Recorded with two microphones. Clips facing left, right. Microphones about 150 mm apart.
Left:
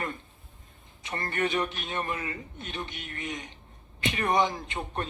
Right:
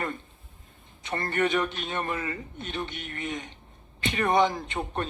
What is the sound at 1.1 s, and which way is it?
A man's voice, 35° right (ahead or behind).